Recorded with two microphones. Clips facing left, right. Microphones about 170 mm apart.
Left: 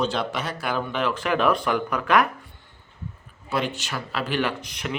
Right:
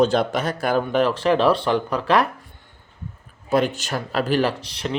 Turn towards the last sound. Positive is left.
turn(degrees=-35)  # may be behind; listen again after turning